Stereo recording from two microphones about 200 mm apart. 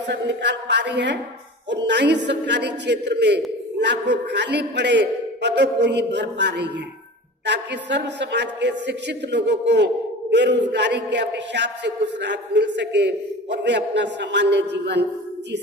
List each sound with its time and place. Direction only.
0.0 s a man's voice: 60° right (ahead or behind)